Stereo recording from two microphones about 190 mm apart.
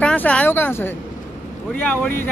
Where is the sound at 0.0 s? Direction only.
5° left (ahead or behind).